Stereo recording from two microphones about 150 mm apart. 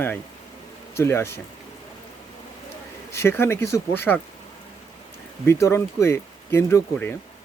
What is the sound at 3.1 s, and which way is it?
Speech, 15° left (ahead or behind).